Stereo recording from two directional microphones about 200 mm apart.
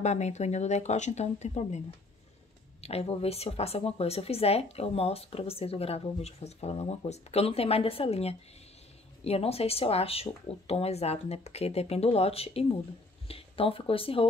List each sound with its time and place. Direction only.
0.0 s speech: 35° left (ahead or behind)
2.8 s speech: 30° left (ahead or behind)